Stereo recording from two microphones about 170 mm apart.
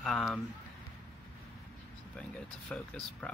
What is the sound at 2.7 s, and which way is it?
Speech, 5° left (ahead or behind).